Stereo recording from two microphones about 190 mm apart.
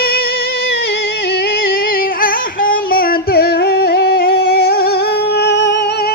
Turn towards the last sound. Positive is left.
turn(degrees=60)  # may be behind; listen again after turning